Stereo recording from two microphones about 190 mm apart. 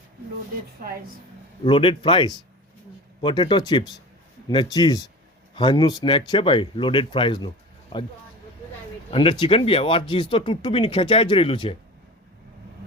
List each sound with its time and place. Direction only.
0.8 s a woman's voice: 50° right (ahead or behind)
1.6 s speech: 25° left (ahead or behind)